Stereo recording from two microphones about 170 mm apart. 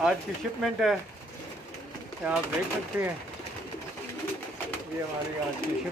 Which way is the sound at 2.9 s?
10° right (ahead or behind).